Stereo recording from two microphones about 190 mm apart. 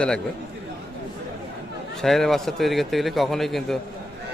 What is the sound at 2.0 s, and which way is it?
A man's voice, centre (ahead or behind).